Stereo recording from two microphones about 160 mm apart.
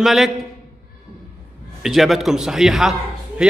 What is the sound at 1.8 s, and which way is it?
A woman's voice, centre (ahead or behind).